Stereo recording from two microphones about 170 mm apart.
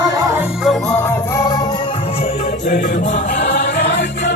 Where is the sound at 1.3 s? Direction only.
20° left (ahead or behind).